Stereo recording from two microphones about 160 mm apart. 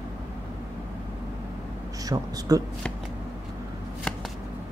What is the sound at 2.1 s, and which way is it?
Speech, 25° right (ahead or behind).